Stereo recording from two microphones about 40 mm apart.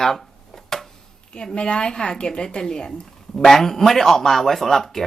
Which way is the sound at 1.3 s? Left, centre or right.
Left.